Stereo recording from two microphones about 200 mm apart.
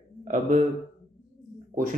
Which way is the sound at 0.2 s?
35° right (ahead or behind).